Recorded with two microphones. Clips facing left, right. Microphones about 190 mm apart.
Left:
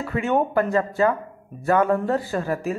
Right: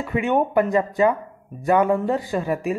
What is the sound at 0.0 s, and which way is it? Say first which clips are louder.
A woman's voice: right 1 dB; 15° right (ahead or behind).